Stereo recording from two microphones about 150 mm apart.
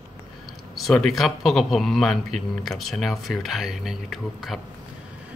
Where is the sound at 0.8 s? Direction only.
Centre (ahead or behind).